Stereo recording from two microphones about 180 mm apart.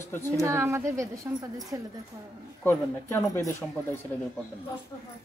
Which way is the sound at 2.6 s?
15° left (ahead or behind).